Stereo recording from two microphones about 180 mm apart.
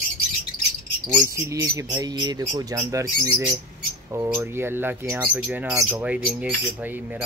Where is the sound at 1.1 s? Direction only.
15° right (ahead or behind).